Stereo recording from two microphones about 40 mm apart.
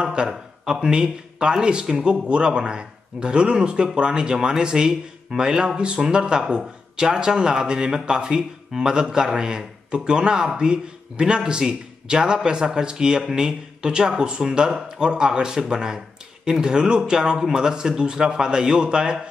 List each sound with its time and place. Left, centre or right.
0.0 s a man's voice: right